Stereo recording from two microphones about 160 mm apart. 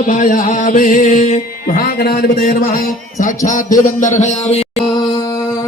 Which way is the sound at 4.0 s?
50° left (ahead or behind).